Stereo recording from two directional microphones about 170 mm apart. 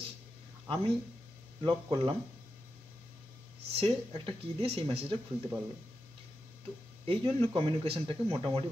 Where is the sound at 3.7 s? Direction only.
35° right (ahead or behind).